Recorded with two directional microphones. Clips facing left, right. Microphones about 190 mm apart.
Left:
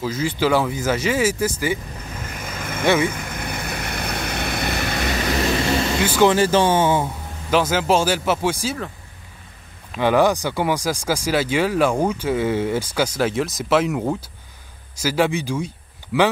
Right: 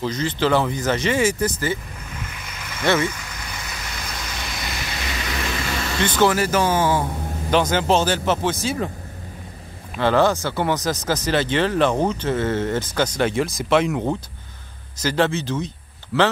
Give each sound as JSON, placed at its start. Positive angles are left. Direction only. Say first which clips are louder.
{"t": 0.0, "sound": "speech", "louder": "left 1 dB", "side_deg": 5}
{"t": 2.8, "sound": "speech", "louder": "left 2 dB", "side_deg": 15}
{"t": 3.1, "sound": "vehicle", "louder": "left 6 dB", "side_deg": 55}
{"t": 5.9, "sound": "speech", "louder": "left 2 dB", "side_deg": 10}
{"t": 6.2, "sound": "speech", "louder": "left 3 dB", "side_deg": 30}
{"t": 7.5, "sound": "speech", "louder": "even", "side_deg": 5}
{"t": 9.9, "sound": "speech", "louder": "left 1 dB", "side_deg": 15}